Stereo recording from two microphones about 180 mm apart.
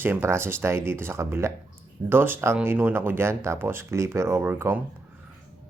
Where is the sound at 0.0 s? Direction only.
15° right (ahead or behind).